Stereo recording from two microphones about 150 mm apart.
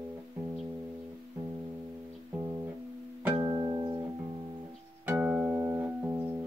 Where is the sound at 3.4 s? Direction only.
25° right (ahead or behind).